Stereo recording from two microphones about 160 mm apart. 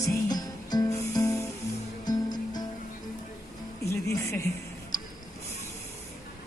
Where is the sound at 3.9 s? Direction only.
15° left (ahead or behind).